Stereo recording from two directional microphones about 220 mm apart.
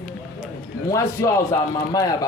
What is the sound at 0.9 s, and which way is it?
A man's voice, 15° left (ahead or behind).